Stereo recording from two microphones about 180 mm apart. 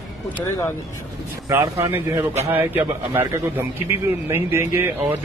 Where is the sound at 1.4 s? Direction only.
20° right (ahead or behind).